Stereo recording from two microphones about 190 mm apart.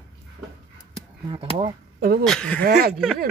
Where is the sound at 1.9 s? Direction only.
50° right (ahead or behind).